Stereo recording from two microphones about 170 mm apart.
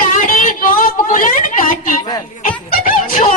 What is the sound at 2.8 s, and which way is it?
Music, 50° left (ahead or behind).